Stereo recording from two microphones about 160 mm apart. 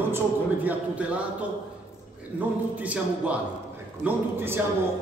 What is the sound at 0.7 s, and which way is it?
Speech, 10° right (ahead or behind).